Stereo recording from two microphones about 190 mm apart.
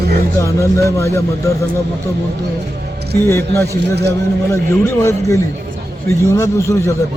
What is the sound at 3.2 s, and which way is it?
Speech, 15° left (ahead or behind).